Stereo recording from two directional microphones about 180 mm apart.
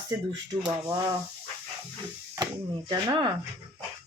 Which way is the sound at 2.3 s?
20° right (ahead or behind).